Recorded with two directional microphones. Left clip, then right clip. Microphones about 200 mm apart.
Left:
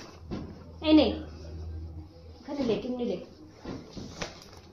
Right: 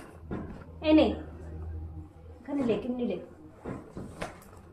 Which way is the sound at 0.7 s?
15° left (ahead or behind).